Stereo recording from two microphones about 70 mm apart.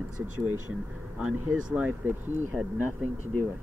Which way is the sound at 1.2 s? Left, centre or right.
Centre.